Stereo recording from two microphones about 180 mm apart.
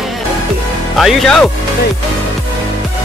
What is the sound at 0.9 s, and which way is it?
Speech, centre (ahead or behind).